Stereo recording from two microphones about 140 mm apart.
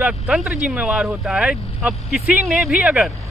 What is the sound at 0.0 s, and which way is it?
Speech, 10° right (ahead or behind).